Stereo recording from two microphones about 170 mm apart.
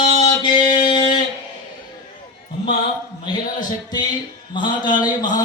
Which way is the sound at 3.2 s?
25° left (ahead or behind).